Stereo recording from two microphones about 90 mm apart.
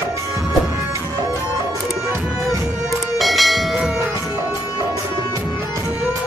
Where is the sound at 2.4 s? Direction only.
Centre (ahead or behind).